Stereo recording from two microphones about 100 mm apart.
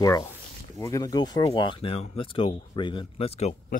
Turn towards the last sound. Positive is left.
turn(degrees=85)